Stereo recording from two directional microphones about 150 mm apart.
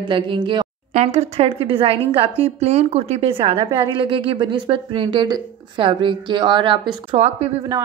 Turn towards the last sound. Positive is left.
turn(degrees=-45)  # may be behind; listen again after turning